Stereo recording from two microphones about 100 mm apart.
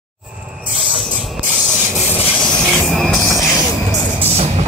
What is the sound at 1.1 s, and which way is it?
Hiss, centre (ahead or behind).